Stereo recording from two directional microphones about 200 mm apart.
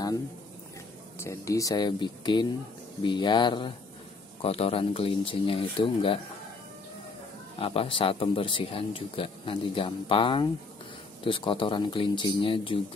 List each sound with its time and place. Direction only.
1.2 s speech: 15° left (ahead or behind)
7.5 s speech: 25° left (ahead or behind)